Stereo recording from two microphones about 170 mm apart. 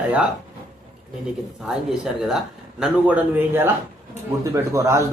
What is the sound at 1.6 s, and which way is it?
A man's voice, 5° right (ahead or behind).